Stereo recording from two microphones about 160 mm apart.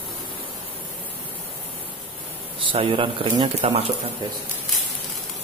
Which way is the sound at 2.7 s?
35° right (ahead or behind).